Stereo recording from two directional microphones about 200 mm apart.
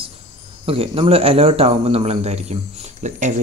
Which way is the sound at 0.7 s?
30° right (ahead or behind).